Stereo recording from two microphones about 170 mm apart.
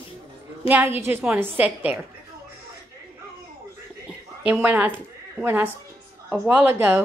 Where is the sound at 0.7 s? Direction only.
10° right (ahead or behind).